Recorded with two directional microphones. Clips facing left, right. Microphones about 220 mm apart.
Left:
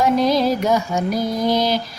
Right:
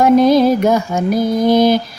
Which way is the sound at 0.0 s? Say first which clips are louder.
Right 7 dB; 50° right (ahead or behind).